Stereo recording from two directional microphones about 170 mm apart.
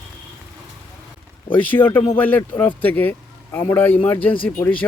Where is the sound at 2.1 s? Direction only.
10° left (ahead or behind).